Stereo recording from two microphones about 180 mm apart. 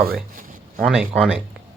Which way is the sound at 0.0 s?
55° right (ahead or behind).